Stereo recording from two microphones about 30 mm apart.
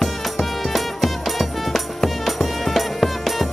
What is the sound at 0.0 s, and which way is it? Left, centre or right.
Music, centre.